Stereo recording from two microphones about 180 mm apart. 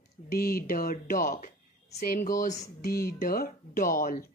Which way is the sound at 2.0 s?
50° left (ahead or behind).